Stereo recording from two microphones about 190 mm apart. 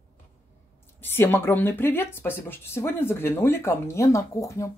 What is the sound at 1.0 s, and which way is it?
Speech, 10° left (ahead or behind).